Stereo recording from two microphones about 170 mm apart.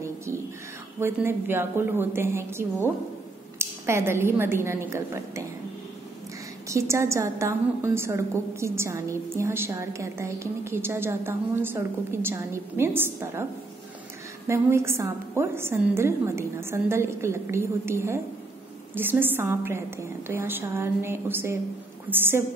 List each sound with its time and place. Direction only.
0.9 s a woman's voice: 15° right (ahead or behind)
6.7 s a woman's voice: 15° right (ahead or behind)
14.5 s a woman's voice: 15° right (ahead or behind)